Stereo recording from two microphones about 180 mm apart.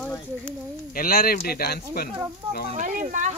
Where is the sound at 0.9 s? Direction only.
55° left (ahead or behind).